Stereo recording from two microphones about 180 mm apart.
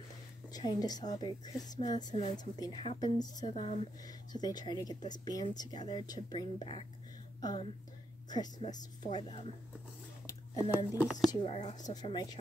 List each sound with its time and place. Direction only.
0.5 s a woman's voice: 20° left (ahead or behind)
4.0 s a woman's voice: 20° left (ahead or behind)
10.2 s a sound: 20° left (ahead or behind)
11.0 s speech: centre (ahead or behind)
11.2 s a woman's voice: 30° left (ahead or behind)